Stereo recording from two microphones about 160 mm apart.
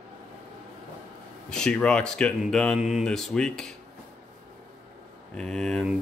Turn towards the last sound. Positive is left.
turn(degrees=5)  # may be behind; listen again after turning